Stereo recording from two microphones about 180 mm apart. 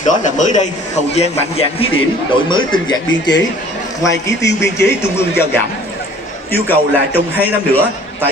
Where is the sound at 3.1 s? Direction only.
90° left.